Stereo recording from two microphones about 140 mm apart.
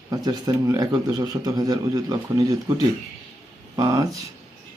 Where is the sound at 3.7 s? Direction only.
25° right (ahead or behind).